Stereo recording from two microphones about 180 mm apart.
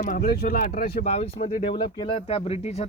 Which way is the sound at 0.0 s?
50° left (ahead or behind).